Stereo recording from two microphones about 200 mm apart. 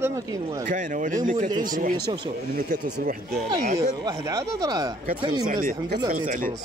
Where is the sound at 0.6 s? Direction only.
40° right (ahead or behind).